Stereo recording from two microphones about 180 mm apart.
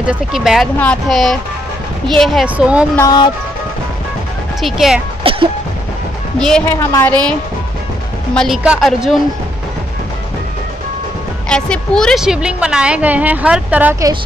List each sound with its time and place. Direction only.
0.0 s a woman's voice: 5° right (ahead or behind)
3.0 s speech: 20° left (ahead or behind)
4.6 s a woman's voice: centre (ahead or behind)
5.2 s music: 30° right (ahead or behind)
6.4 s a woman's voice: 5° left (ahead or behind)
6.8 s a woman's voice: 15° left (ahead or behind)
8.4 s a woman's voice: centre (ahead or behind)
11.4 s a woman's voice: 5° left (ahead or behind)